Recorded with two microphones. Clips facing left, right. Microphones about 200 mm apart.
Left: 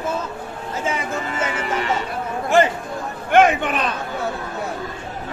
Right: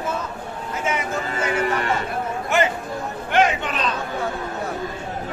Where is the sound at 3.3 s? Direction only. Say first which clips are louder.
Left 5 dB; 55° left (ahead or behind).